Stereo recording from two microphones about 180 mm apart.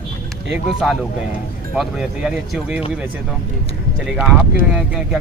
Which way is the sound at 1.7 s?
5° right (ahead or behind).